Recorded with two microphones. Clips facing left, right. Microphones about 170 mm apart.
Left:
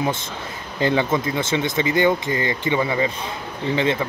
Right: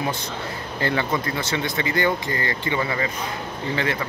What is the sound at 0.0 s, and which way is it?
Speech, 20° left (ahead or behind).